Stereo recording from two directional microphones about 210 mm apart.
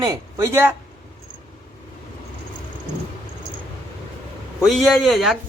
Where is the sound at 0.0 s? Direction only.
15° right (ahead or behind).